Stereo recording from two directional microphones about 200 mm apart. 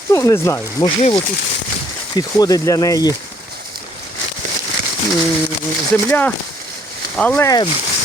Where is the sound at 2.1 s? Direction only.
20° left (ahead or behind).